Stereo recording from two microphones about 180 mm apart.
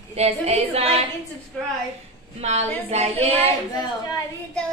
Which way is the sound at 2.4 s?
40° right (ahead or behind).